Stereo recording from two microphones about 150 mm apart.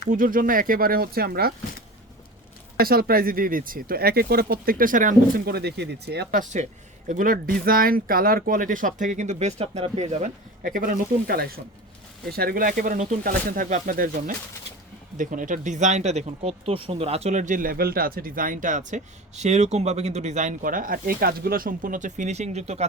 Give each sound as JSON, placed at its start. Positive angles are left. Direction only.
{"t": 0.1, "sound": "speech", "side_deg": -70}
{"t": 2.7, "sound": "speech", "side_deg": -85}
{"t": 7.1, "sound": "speech", "side_deg": -70}
{"t": 10.6, "sound": "speech", "side_deg": -75}